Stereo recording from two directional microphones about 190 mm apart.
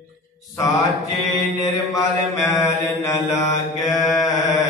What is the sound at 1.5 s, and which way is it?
Mantra, 15° left (ahead or behind).